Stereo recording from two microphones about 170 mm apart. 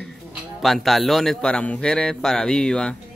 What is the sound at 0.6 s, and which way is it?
A man's voice, centre (ahead or behind).